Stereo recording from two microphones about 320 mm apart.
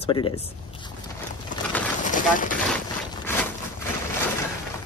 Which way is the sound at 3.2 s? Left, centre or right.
Centre.